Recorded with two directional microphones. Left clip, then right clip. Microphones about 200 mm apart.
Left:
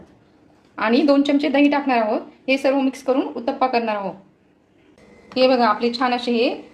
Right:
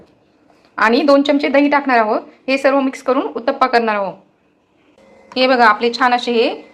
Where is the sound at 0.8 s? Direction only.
15° right (ahead or behind).